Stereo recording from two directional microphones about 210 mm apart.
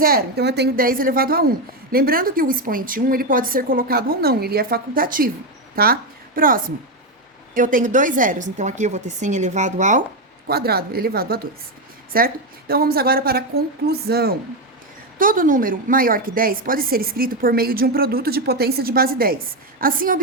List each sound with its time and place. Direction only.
0.0 s a woman's voice: 50° right (ahead or behind)
10.4 s a woman's voice: 50° right (ahead or behind)